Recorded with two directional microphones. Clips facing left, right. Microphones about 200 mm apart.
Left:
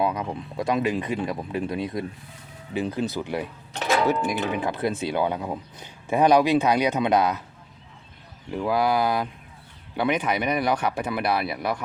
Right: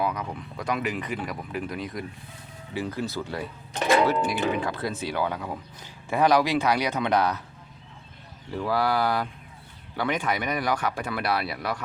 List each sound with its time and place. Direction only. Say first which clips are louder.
0.0 s speech: left 3 dB; 25° left (ahead or behind)
8.4 s speech: left 3 dB; 20° left (ahead or behind)